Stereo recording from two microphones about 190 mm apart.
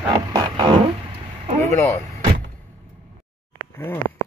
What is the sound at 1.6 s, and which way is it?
Speech, 15° left (ahead or behind).